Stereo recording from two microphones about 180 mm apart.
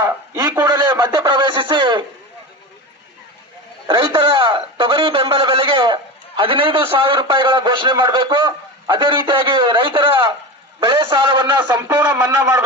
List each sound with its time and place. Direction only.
0.0 s a man's voice: 20° right (ahead or behind)
3.8 s a man's voice: 25° right (ahead or behind)